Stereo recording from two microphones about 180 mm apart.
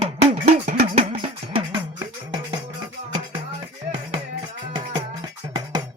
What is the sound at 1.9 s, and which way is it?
Music, 25° right (ahead or behind).